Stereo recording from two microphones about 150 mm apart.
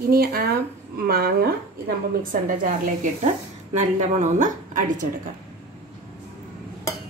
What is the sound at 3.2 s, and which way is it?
A woman's voice, 50° right (ahead or behind).